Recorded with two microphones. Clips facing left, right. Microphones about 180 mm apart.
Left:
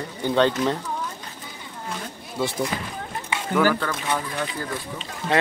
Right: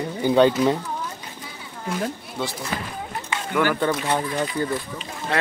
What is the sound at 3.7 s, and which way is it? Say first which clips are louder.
Speech: right 3 dB; 20° right (ahead or behind).